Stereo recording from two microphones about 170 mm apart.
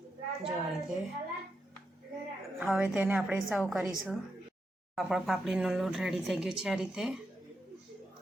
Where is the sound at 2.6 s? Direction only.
5° right (ahead or behind).